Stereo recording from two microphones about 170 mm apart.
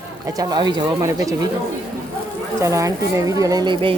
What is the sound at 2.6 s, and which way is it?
Speech, 20° right (ahead or behind).